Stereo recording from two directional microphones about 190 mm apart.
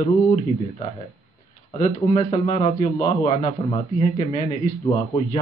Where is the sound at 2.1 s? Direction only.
30° left (ahead or behind).